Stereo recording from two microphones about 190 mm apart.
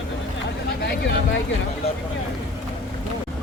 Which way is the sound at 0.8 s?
55° left (ahead or behind).